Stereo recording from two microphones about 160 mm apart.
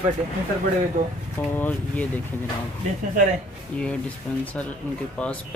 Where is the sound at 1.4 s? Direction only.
10° left (ahead or behind).